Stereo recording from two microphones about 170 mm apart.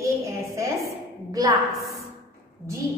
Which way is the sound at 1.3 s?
20° right (ahead or behind).